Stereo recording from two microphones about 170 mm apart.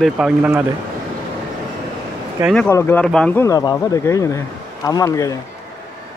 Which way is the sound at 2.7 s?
15° left (ahead or behind).